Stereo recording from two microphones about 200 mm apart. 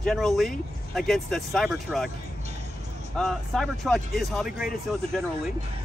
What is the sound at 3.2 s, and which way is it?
Speech, centre (ahead or behind).